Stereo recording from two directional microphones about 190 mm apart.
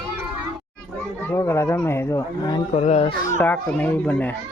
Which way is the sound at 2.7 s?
35° left (ahead or behind).